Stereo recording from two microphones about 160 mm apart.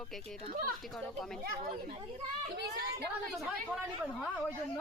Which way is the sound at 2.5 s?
90° right.